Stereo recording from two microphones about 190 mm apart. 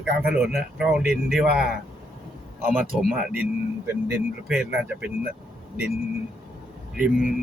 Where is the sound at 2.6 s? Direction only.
10° right (ahead or behind).